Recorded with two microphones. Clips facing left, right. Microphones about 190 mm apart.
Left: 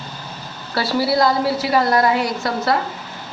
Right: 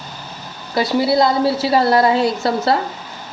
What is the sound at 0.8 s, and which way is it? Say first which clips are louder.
A woman's voice: right 3 dB; 20° right (ahead or behind).